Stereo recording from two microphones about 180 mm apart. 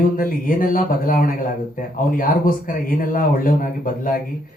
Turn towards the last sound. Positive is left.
turn(degrees=50)  # may be behind; listen again after turning